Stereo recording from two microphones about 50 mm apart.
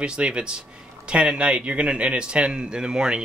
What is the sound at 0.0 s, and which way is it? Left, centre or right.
A man's voice, centre.